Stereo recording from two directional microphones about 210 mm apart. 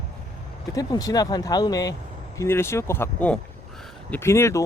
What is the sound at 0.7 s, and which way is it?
Speech, 15° left (ahead or behind).